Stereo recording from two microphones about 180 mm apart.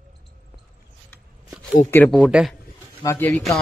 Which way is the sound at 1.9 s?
5° left (ahead or behind).